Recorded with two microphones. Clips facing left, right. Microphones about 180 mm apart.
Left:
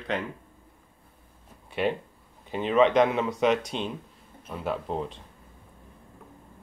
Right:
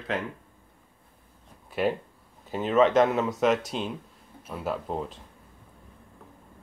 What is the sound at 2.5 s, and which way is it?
Speech, centre (ahead or behind).